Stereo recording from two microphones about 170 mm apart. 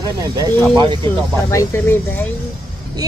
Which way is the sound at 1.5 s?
15° left (ahead or behind).